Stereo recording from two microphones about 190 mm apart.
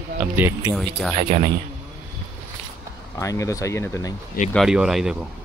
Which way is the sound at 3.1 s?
15° left (ahead or behind).